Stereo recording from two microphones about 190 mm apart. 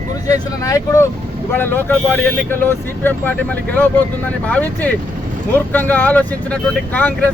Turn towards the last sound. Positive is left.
turn(degrees=5)  # may be behind; listen again after turning